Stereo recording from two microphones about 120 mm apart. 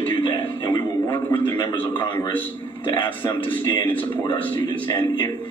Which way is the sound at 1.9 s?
45° left (ahead or behind).